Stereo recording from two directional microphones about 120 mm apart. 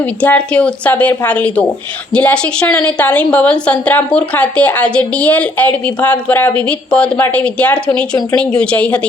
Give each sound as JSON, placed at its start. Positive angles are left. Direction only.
{"t": 0.0, "sound": "a woman's voice", "side_deg": 10}